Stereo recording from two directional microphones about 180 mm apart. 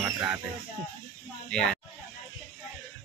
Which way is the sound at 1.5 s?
5° left (ahead or behind).